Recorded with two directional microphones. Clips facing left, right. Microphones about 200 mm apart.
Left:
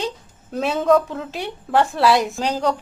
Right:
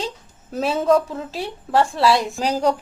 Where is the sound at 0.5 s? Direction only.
Centre (ahead or behind).